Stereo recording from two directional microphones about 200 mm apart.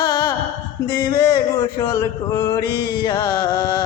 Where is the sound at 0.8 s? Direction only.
15° left (ahead or behind).